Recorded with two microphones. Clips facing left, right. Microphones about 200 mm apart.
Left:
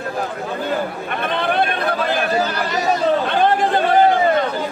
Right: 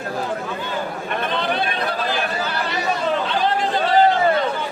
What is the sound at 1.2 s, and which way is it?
Chatter, 55° left (ahead or behind).